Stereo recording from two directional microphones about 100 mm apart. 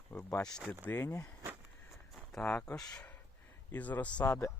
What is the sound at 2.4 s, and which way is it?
Speech, 15° left (ahead or behind).